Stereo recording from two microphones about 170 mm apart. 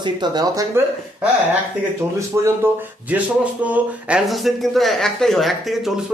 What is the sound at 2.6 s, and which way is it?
A man's voice, 15° right (ahead or behind).